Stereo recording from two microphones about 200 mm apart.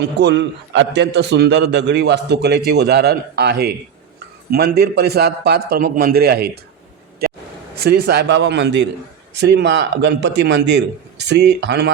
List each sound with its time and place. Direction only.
0.0 s a man's voice: 60° right (ahead or behind)
7.8 s a man's voice: 55° right (ahead or behind)